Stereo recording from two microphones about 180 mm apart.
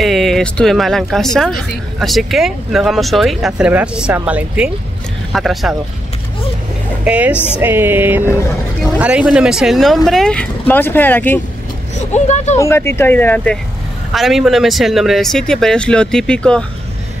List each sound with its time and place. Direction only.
0.0 s speech: centre (ahead or behind)
7.1 s music: 10° right (ahead or behind)
8.9 s speech: 5° right (ahead or behind); by 11.4 s 10° left (ahead or behind)
12.1 s speech: 40° left (ahead or behind)
12.5 s speech: 15° left (ahead or behind)